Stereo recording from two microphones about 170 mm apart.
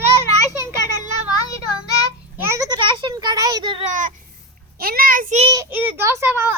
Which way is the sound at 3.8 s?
50° right (ahead or behind).